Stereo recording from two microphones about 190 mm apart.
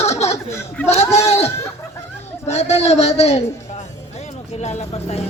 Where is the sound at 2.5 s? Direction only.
35° left (ahead or behind).